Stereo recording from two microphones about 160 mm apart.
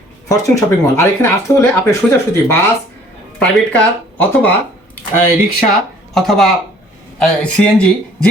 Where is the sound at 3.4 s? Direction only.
5° left (ahead or behind).